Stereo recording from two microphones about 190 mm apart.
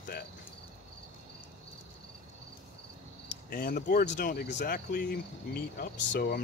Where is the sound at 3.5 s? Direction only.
50° left (ahead or behind); by 6.4 s 65° left (ahead or behind).